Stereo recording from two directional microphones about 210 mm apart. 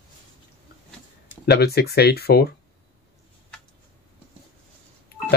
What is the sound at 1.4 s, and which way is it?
Speech, 50° left (ahead or behind).